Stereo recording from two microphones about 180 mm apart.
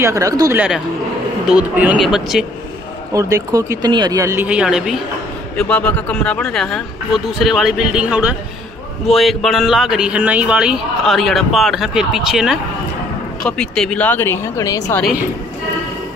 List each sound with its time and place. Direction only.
0.0 s a man's voice: 15° right (ahead or behind)
3.1 s speech: 20° right (ahead or behind)
5.6 s a man's voice: 5° left (ahead or behind)